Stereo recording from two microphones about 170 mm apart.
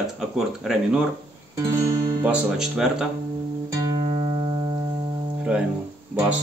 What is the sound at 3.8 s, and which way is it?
Music, 30° right (ahead or behind).